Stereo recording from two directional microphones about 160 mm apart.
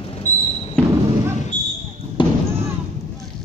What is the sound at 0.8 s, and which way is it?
Basketball bounce, 10° left (ahead or behind).